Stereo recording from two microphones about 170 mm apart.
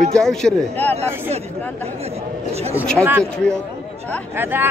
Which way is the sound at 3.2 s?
5° left (ahead or behind).